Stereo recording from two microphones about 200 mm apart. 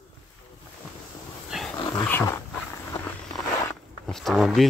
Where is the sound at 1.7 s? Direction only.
15° left (ahead or behind).